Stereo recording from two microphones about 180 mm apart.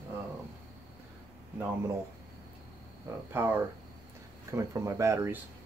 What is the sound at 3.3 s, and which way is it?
Speech, 10° right (ahead or behind).